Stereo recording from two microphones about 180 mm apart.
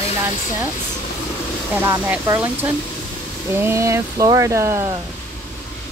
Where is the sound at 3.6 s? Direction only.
15° right (ahead or behind).